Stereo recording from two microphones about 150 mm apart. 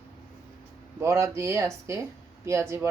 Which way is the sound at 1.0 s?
20° right (ahead or behind).